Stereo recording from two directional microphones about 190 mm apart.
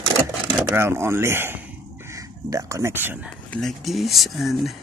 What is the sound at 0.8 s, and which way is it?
Speech, 15° right (ahead or behind).